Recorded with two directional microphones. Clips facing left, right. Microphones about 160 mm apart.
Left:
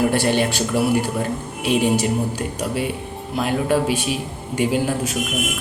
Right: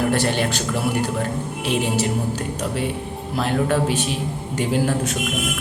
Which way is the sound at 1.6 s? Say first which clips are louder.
Left 4 dB; 15° left (ahead or behind).